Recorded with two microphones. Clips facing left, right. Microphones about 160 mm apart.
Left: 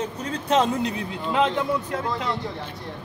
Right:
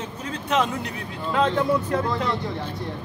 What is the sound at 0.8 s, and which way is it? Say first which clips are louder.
Speech: left 3 dB; 20° left (ahead or behind).